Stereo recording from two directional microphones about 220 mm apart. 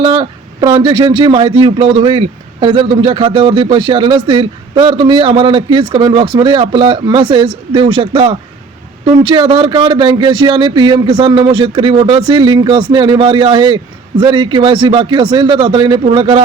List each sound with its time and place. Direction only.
0.0 s speech: 20° right (ahead or behind)